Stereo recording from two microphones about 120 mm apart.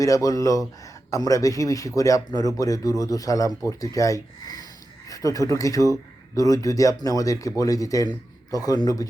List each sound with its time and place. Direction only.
0.0 s a man's voice: 30° left (ahead or behind)